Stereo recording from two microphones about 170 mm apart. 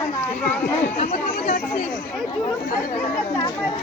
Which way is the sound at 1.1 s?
60° left (ahead or behind).